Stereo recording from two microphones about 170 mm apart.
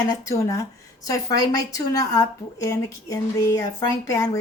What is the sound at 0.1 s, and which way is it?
A woman's voice, 20° left (ahead or behind).